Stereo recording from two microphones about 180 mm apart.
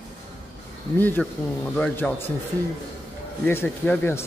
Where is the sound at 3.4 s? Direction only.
10° left (ahead or behind).